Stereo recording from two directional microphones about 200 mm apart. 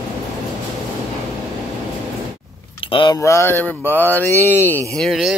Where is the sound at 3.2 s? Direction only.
15° left (ahead or behind).